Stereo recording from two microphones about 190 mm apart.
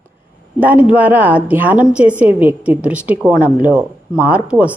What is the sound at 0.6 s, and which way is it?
A man's voice, 10° right (ahead or behind).